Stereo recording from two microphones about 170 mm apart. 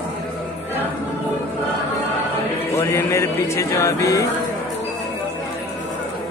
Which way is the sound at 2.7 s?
15° left (ahead or behind).